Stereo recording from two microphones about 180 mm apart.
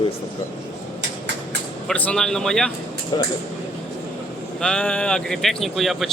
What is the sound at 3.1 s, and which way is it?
Speech, 20° left (ahead or behind).